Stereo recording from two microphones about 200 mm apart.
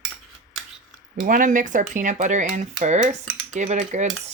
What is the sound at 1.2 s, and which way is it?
Speech, 40° right (ahead or behind).